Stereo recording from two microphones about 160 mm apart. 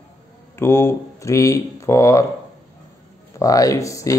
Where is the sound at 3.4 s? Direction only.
20° left (ahead or behind).